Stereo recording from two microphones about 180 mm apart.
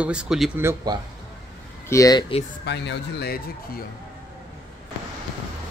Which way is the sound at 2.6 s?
75° left (ahead or behind).